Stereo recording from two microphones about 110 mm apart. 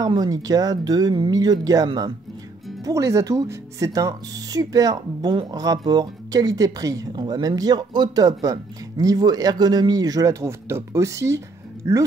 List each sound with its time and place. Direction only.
0.0 s speech: 35° right (ahead or behind)